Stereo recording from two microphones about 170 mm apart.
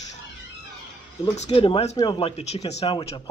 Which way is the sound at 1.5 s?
35° left (ahead or behind).